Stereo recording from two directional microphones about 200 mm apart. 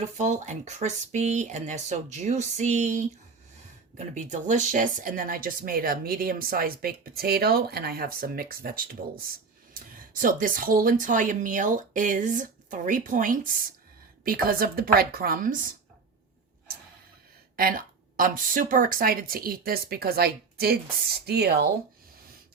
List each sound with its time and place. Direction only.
0.2 s speech: 35° right (ahead or behind)
17.6 s speech: 45° right (ahead or behind)